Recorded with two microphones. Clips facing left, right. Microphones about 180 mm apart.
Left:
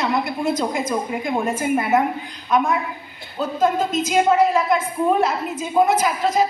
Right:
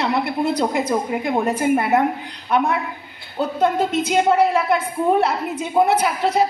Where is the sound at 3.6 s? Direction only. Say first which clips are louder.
Even; 65° right (ahead or behind).